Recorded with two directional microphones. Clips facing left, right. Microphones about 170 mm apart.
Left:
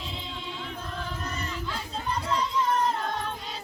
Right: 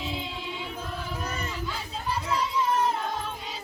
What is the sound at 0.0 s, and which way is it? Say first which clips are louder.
Choir: right 4 dB; 5° right (ahead or behind).